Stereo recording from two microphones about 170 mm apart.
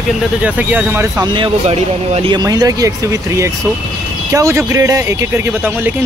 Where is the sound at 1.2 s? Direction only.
30° right (ahead or behind).